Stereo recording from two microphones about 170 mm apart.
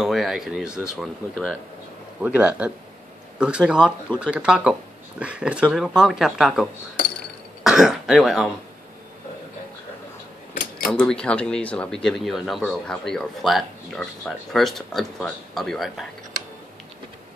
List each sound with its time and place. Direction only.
0.0 s speech: centre (ahead or behind)
2.2 s speech: 10° right (ahead or behind)
10.5 s a sound: 50° left (ahead or behind)
10.9 s speech: 5° left (ahead or behind)